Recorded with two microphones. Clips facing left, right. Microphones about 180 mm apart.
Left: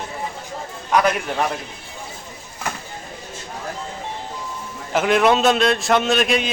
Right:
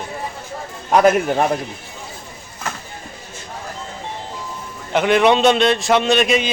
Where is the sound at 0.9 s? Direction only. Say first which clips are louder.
Right 5 dB; 45° right (ahead or behind).